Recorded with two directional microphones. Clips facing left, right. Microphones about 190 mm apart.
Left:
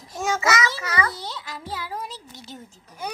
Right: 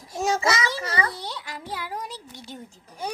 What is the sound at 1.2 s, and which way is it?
A woman's voice, 15° right (ahead or behind).